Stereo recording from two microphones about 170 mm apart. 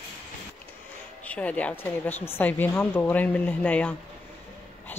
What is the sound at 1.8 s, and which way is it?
Speech, 10° left (ahead or behind).